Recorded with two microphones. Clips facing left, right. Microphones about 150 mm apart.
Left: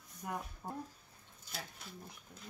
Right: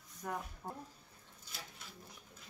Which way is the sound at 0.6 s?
10° left (ahead or behind).